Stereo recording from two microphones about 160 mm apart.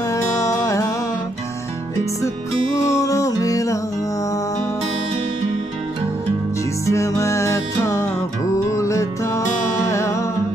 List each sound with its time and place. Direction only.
0.1 s music: 20° left (ahead or behind)
2.8 s music: 20° left (ahead or behind)
6.9 s music: 20° left (ahead or behind)